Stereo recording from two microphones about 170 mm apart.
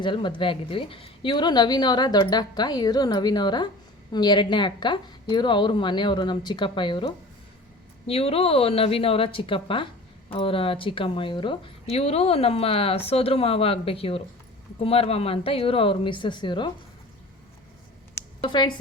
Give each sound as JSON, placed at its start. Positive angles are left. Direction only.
{"t": 0.0, "sound": "a woman's voice", "side_deg": 30}
{"t": 18.4, "sound": "a woman's voice", "side_deg": 25}